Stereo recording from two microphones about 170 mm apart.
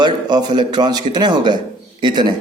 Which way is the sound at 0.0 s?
25° right (ahead or behind).